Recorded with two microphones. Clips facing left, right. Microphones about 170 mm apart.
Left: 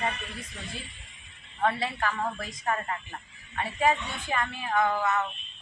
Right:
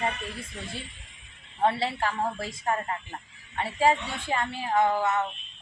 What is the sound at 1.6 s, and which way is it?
A man's voice, 30° right (ahead or behind).